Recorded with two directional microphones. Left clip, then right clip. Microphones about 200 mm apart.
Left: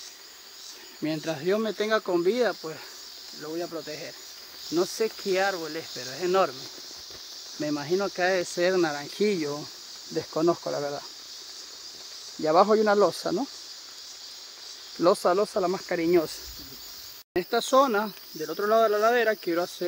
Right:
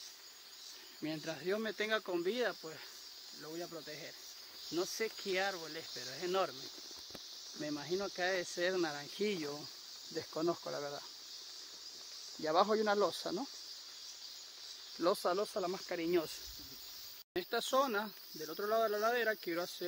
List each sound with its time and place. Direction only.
1.0 s speech: 5° left (ahead or behind)
2.4 s speech: 10° right (ahead or behind)
7.6 s speech: 5° right (ahead or behind)
10.1 s speech: 15° right (ahead or behind)
12.4 s speech: 15° right (ahead or behind)
15.0 s speech: 5° right (ahead or behind)
17.5 s speech: centre (ahead or behind)